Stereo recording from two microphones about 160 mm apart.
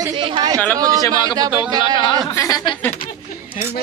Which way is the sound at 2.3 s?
20° left (ahead or behind).